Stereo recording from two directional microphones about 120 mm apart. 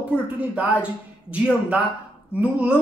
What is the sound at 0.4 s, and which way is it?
Speech, 10° right (ahead or behind).